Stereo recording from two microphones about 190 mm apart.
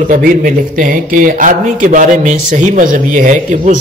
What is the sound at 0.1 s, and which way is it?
A man's voice, 45° right (ahead or behind).